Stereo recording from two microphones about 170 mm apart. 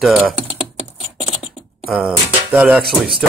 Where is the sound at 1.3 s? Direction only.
Centre (ahead or behind).